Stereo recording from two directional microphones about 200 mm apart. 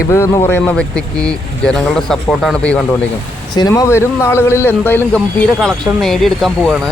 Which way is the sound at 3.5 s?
15° left (ahead or behind).